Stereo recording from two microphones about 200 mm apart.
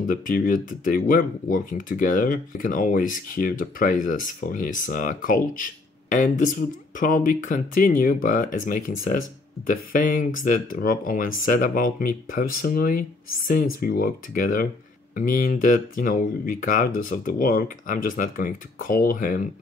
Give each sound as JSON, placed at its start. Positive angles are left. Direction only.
{"t": 0.0, "sound": "speech", "side_deg": 40}